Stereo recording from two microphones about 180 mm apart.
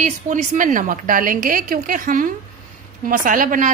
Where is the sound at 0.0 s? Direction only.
45° right (ahead or behind).